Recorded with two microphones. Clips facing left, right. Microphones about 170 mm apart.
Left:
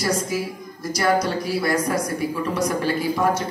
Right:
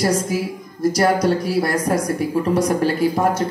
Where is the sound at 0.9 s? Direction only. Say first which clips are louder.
Right 2 dB; 45° right (ahead or behind).